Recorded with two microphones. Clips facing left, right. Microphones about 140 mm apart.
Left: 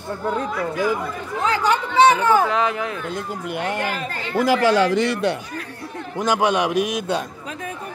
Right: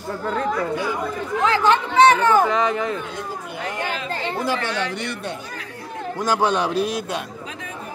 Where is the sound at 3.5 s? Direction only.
70° left (ahead or behind).